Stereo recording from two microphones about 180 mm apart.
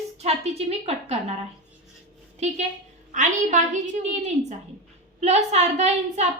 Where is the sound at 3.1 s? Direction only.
45° right (ahead or behind).